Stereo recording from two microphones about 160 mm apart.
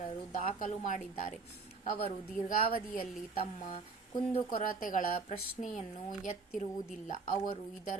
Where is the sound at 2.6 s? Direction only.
65° left (ahead or behind).